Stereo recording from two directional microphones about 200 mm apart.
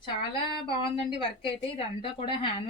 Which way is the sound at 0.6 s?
25° left (ahead or behind).